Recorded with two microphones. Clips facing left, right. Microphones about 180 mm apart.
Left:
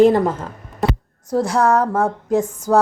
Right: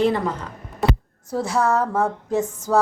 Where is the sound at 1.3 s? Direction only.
15° left (ahead or behind).